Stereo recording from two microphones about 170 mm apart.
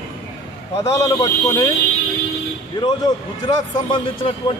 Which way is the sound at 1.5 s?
20° left (ahead or behind).